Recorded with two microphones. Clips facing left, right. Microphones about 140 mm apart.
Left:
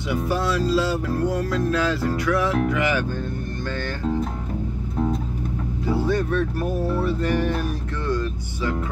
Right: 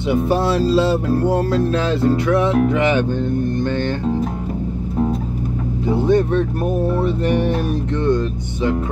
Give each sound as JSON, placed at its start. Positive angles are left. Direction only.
{"t": 0.1, "sound": "music", "side_deg": -25}
{"t": 5.9, "sound": "music", "side_deg": -20}